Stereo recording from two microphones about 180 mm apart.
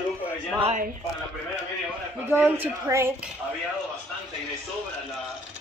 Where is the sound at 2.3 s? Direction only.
10° right (ahead or behind).